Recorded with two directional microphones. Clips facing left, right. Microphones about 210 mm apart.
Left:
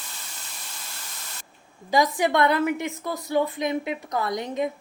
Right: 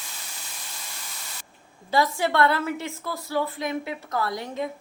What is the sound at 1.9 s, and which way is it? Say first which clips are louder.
A woman's voice: left 2 dB; 15° left (ahead or behind).